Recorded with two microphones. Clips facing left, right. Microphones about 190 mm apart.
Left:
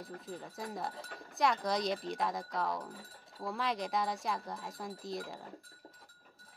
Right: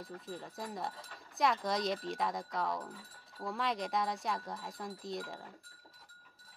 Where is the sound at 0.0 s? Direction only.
Centre (ahead or behind).